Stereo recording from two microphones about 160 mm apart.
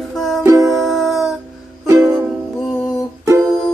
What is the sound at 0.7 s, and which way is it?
Music, centre (ahead or behind).